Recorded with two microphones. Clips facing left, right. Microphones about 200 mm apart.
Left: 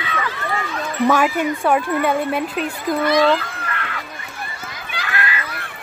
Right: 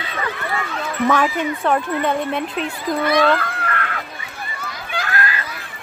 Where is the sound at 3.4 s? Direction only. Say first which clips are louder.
Right 4 dB; 55° right (ahead or behind).